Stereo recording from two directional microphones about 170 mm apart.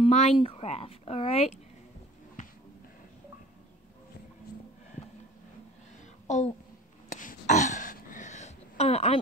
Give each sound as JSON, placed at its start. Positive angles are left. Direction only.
{"t": 0.0, "sound": "speech", "side_deg": 40}
{"t": 6.2, "sound": "speech", "side_deg": 45}
{"t": 7.1, "sound": "throat clearing", "side_deg": 50}